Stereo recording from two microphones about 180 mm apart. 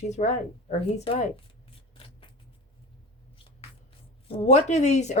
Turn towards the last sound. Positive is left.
turn(degrees=40)  # may be behind; listen again after turning